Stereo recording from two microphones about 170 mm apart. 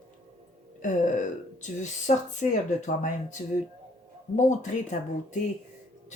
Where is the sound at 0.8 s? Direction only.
50° left (ahead or behind).